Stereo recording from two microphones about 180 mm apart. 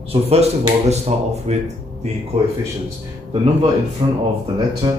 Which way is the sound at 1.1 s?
40° right (ahead or behind).